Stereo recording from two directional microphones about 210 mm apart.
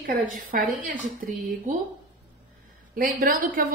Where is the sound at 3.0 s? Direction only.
40° right (ahead or behind).